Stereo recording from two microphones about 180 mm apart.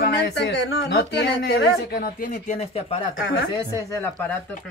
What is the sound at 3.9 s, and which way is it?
Speech, 15° left (ahead or behind).